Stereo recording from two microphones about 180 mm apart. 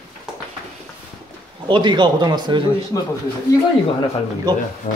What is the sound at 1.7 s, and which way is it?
Speech, 25° right (ahead or behind).